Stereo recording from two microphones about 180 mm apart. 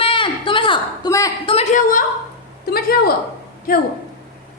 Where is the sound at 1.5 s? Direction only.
35° left (ahead or behind).